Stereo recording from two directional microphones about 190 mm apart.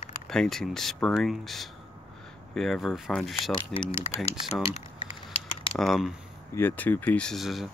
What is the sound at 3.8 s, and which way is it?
Speech, 35° left (ahead or behind).